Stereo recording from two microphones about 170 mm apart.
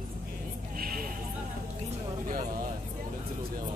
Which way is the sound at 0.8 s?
60° right (ahead or behind).